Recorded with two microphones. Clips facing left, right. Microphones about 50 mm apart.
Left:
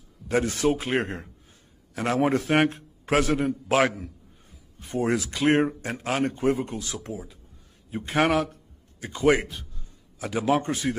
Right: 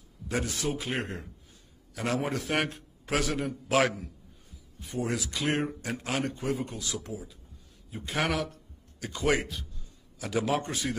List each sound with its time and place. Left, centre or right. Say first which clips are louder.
0.3 s speech: left 8 dB; left